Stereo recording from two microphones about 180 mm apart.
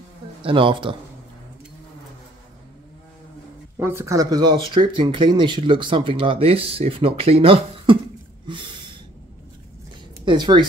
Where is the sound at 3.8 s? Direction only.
15° right (ahead or behind); by 8.0 s 30° right (ahead or behind).